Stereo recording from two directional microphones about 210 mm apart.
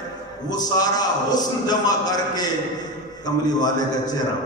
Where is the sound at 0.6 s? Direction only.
20° left (ahead or behind).